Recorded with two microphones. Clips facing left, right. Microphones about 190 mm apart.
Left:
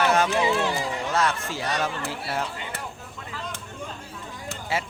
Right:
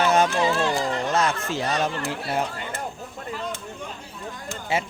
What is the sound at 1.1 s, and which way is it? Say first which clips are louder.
Speech: right 2 dB; 20° right (ahead or behind).